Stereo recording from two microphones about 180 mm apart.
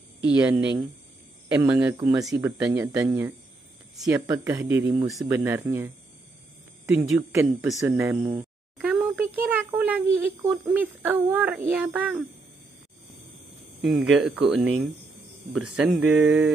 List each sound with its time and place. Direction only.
0.2 s speech: 10° right (ahead or behind)
7.2 s a child's voice: 15° right (ahead or behind)
13.7 s speech: centre (ahead or behind)